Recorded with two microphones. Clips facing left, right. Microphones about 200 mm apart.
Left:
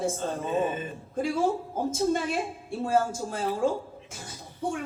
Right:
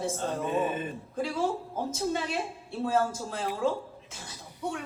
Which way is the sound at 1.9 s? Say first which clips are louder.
Left 4 dB; 50° left (ahead or behind).